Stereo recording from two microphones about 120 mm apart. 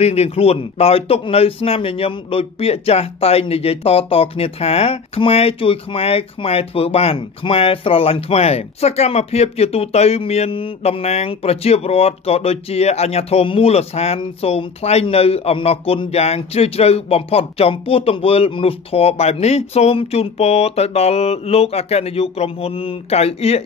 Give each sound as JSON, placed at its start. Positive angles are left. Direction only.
{"t": 0.0, "sound": "a man's voice", "side_deg": 60}